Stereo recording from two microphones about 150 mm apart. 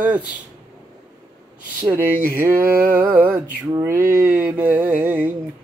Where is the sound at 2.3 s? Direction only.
10° right (ahead or behind).